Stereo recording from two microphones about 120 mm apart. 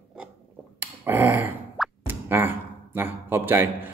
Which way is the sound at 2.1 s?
15° right (ahead or behind).